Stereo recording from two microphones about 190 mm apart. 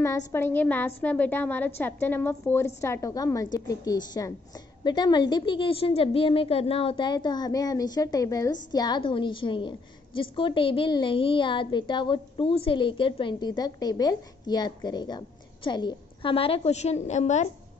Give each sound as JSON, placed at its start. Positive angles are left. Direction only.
{"t": 0.3, "sound": "a woman's voice", "side_deg": 10}